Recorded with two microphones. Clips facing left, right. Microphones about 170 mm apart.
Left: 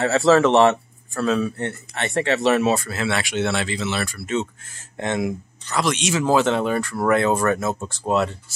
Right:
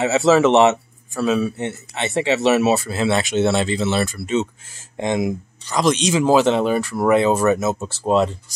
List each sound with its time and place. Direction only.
0.0 s speech: 5° right (ahead or behind)
2.9 s speech: 25° right (ahead or behind)
4.6 s speech: 10° right (ahead or behind)
6.4 s speech: 25° right (ahead or behind)
6.7 s speech: 10° right (ahead or behind)